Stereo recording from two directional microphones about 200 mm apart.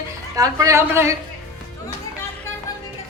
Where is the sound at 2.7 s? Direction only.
15° left (ahead or behind).